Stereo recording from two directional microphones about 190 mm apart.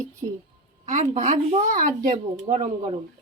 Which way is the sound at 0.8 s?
35° right (ahead or behind).